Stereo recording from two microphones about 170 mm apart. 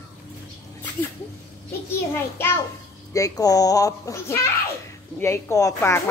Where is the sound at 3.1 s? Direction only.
20° left (ahead or behind).